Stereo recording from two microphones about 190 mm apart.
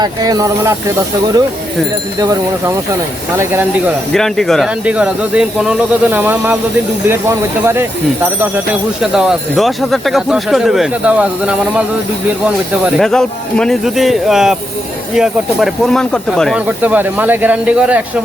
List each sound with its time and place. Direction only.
0.0 s speech: 20° right (ahead or behind)
2.1 s speech: 20° right (ahead or behind)
4.1 s speech: centre (ahead or behind)